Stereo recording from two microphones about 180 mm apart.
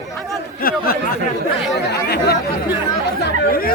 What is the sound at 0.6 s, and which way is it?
Chatter, 55° left (ahead or behind).